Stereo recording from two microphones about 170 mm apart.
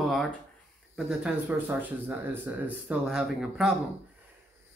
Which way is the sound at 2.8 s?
5° right (ahead or behind).